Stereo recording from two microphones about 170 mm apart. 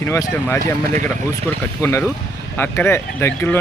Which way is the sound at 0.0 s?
15° left (ahead or behind).